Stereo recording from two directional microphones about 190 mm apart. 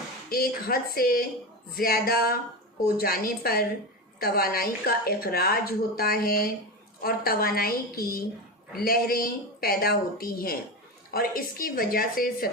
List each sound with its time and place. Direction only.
0.3 s speech: 55° left (ahead or behind)